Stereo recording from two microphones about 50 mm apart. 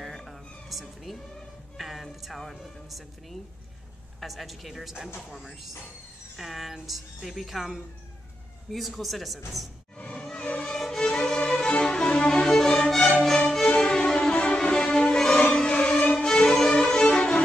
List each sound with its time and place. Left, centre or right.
0.0 s a sound: centre
1.8 s a woman's voice: centre
10.3 s music: left
10.7 s violin: centre
11.0 s violin: centre
15.7 s violin: left